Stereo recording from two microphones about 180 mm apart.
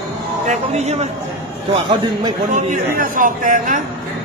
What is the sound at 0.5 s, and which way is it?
A man's voice, 35° right (ahead or behind).